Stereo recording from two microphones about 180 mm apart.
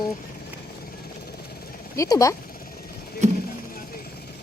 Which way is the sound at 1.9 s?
20° left (ahead or behind).